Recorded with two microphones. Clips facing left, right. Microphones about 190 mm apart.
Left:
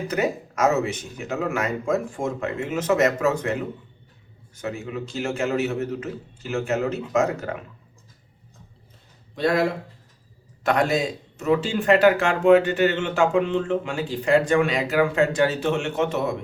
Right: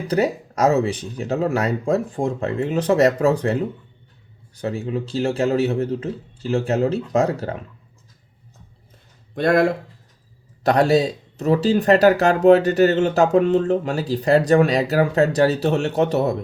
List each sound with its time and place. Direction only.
0.1 s speech: 35° right (ahead or behind)
9.3 s speech: 50° right (ahead or behind)
10.6 s speech: 35° right (ahead or behind)